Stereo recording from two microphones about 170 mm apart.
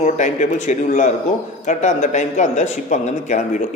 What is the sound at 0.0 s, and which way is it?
A man's voice, 45° left (ahead or behind).